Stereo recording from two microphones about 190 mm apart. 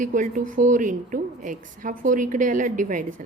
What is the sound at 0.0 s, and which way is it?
A woman's voice, 45° right (ahead or behind).